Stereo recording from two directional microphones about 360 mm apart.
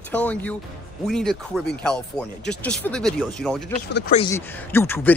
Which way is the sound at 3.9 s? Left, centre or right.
Left.